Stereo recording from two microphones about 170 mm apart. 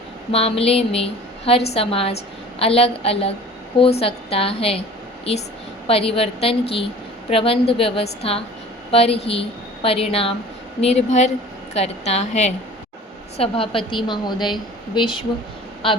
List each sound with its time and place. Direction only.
0.3 s a woman's voice: 35° left (ahead or behind)
5.9 s a woman's voice: 35° left (ahead or behind)